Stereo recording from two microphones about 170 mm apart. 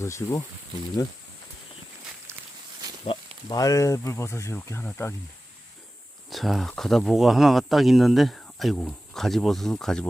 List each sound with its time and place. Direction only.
0.0 s speech: 15° left (ahead or behind)
3.0 s speech: 25° left (ahead or behind)
6.3 s speech: centre (ahead or behind)